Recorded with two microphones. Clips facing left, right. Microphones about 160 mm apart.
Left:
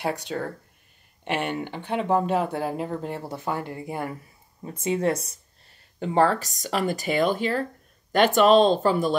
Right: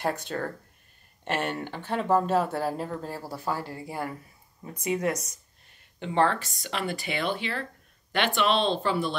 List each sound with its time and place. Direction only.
0.0 s speech: 15° left (ahead or behind); by 9.1 s 45° left (ahead or behind)